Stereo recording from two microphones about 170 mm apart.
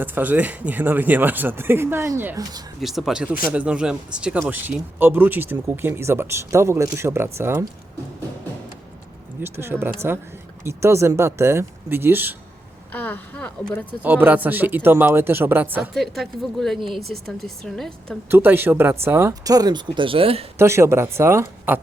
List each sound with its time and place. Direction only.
0.0 s speech: 10° right (ahead or behind)
2.8 s speech: centre (ahead or behind)
9.4 s speech: 15° right (ahead or behind)
12.9 s speech: 10° left (ahead or behind)
14.0 s speech: 10° right (ahead or behind)
16.0 s speech: centre (ahead or behind)
18.3 s speech: 10° right (ahead or behind); by 20.4 s 35° right (ahead or behind)
20.6 s speech: 15° right (ahead or behind)